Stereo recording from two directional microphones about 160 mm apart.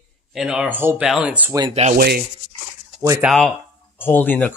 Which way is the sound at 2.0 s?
65° right (ahead or behind).